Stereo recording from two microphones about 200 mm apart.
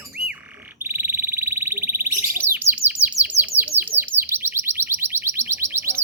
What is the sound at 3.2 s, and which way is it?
Bird, 35° left (ahead or behind).